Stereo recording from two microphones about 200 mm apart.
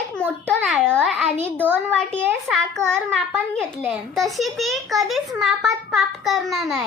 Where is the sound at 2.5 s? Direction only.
5° left (ahead or behind).